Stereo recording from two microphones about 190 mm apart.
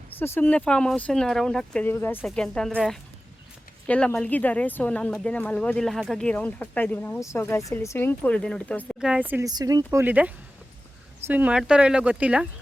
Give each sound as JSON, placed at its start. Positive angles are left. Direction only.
{"t": 0.2, "sound": "speech", "side_deg": 10}
{"t": 9.0, "sound": "speech", "side_deg": -5}
{"t": 9.5, "sound": "speech", "side_deg": -20}